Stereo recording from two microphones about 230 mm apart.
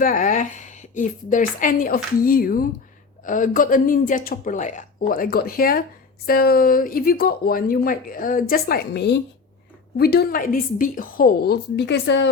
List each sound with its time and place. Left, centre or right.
0.0 s a woman's voice: left